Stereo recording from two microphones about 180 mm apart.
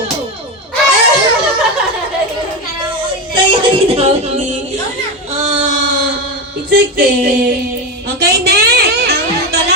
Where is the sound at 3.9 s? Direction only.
35° right (ahead or behind).